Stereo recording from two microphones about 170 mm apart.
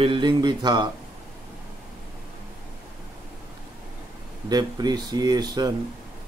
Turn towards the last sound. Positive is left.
turn(degrees=-25)  # may be behind; listen again after turning